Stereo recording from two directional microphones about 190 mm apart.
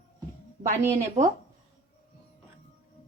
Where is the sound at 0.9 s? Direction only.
40° right (ahead or behind).